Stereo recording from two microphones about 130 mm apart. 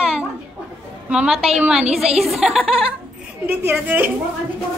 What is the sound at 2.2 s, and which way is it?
A woman's voice, 5° right (ahead or behind).